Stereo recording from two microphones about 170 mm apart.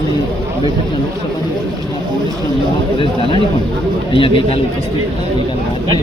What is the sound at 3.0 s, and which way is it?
A man's voice, 30° left (ahead or behind).